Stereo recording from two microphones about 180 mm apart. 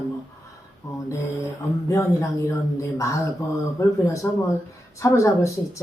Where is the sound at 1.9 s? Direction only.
15° left (ahead or behind).